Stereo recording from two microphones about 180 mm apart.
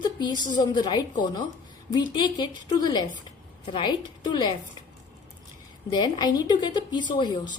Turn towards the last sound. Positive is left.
turn(degrees=25)  # may be behind; listen again after turning